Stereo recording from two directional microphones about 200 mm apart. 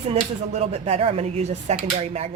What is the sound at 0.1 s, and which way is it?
Speech, 30° right (ahead or behind).